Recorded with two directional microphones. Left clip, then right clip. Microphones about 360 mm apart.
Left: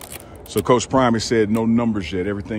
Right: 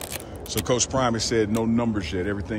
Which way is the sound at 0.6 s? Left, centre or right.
Centre.